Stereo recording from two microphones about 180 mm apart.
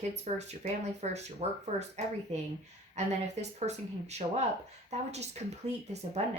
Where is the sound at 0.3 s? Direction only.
40° right (ahead or behind).